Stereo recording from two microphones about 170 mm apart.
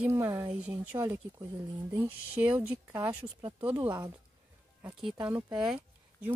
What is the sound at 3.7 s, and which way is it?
Speech, 25° right (ahead or behind).